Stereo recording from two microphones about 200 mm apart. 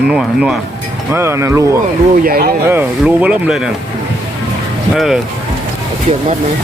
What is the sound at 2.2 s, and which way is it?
Speech, 50° right (ahead or behind).